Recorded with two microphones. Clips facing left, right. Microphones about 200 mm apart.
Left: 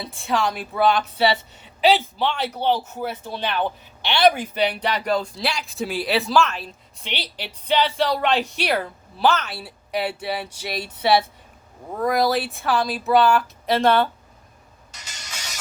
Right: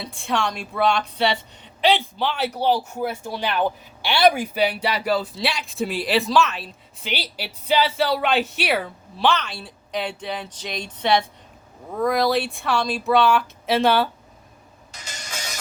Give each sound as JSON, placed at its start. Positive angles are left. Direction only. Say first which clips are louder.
{"t": 0.0, "sound": "a woman's voice", "louder": "left 1 dB", "side_deg": 0}
{"t": 14.9, "sound": "music", "louder": "right 5 dB", "side_deg": -45}